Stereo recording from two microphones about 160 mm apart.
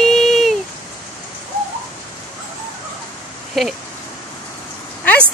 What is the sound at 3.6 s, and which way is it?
Speech, centre (ahead or behind).